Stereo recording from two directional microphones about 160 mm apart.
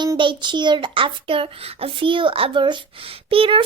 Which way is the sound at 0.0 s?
30° right (ahead or behind).